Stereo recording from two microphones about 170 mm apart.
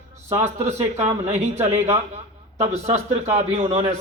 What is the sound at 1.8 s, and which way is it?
A man's voice, 40° right (ahead or behind).